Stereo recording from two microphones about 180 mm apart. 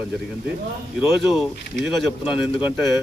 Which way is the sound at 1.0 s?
Centre (ahead or behind).